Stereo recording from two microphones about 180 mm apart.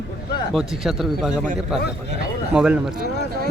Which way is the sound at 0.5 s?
Centre (ahead or behind).